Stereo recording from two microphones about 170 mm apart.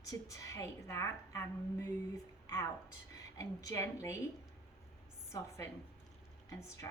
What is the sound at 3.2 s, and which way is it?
Speech, 15° left (ahead or behind).